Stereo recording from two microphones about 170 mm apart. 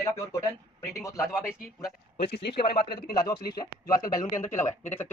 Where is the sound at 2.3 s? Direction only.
80° left.